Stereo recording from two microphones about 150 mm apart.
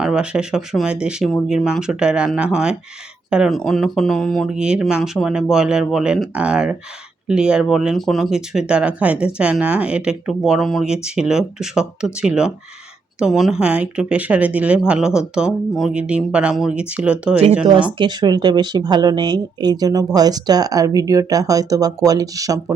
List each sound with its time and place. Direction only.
0.0 s speech: 5° right (ahead or behind)
17.9 s speech: 30° right (ahead or behind)